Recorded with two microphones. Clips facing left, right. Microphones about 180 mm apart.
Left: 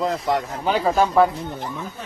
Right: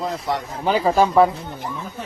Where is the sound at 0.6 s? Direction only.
Centre (ahead or behind).